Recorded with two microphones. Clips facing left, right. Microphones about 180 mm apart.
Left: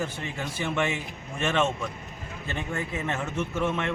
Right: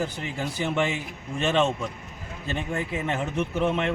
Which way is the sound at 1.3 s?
20° right (ahead or behind).